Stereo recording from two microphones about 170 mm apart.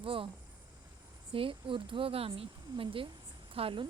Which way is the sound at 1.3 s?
30° right (ahead or behind).